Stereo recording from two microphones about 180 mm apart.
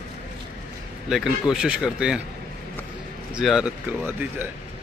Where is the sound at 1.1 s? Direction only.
5° right (ahead or behind).